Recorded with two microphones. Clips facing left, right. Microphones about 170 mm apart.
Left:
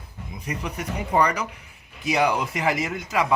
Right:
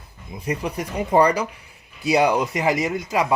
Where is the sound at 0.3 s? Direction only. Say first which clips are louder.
Right 5 dB; 30° right (ahead or behind).